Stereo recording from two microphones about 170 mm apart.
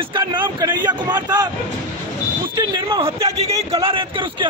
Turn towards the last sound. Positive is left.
turn(degrees=-30)  # may be behind; listen again after turning